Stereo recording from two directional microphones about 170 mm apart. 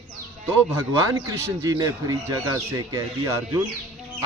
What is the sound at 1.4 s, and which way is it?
Speech, 15° right (ahead or behind).